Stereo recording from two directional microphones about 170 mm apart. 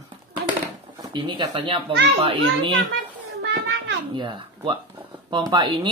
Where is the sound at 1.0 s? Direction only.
30° right (ahead or behind).